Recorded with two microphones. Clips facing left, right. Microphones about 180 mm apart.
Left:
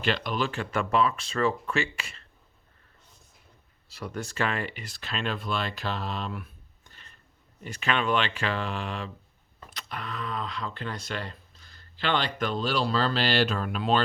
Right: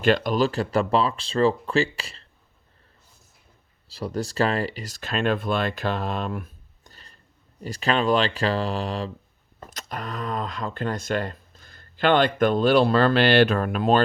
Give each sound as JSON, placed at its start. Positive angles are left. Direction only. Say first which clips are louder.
{"t": 0.0, "sound": "speech", "louder": "right 8 dB", "side_deg": -45}
{"t": 3.8, "sound": "speech", "louder": "right 7 dB", "side_deg": -30}